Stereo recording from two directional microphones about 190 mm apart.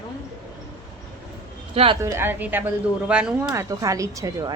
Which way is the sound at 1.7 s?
30° right (ahead or behind).